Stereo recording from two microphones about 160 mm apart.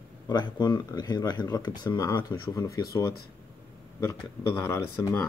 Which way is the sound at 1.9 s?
15° left (ahead or behind).